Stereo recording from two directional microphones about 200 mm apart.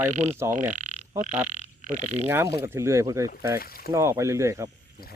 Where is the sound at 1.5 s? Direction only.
35° right (ahead or behind).